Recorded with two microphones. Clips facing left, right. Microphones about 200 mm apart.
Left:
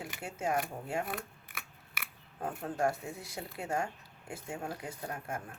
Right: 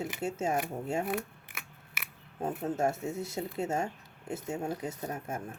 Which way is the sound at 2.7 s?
25° right (ahead or behind).